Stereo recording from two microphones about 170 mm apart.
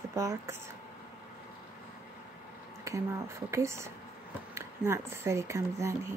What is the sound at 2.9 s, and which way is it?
Speech, 15° right (ahead or behind).